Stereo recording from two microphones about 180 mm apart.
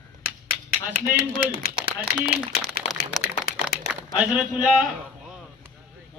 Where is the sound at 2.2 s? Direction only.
60° left (ahead or behind).